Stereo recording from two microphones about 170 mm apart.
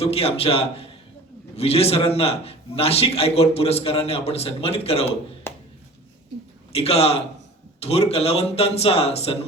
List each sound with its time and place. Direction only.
0.0 s a man's voice: 35° left (ahead or behind)
6.7 s a man's voice: 35° left (ahead or behind)